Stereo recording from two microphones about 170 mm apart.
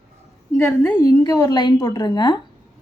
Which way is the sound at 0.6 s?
10° left (ahead or behind).